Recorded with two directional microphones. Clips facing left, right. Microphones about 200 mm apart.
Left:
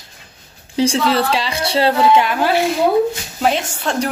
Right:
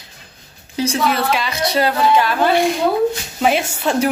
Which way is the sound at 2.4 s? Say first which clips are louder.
Right 1 dB; 5° left (ahead or behind).